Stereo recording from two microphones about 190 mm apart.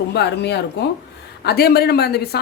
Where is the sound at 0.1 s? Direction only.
60° left (ahead or behind).